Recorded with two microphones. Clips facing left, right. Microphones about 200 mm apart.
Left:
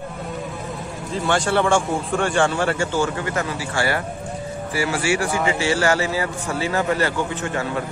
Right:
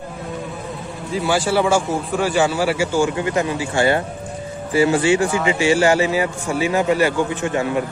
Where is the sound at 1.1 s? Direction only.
5° right (ahead or behind).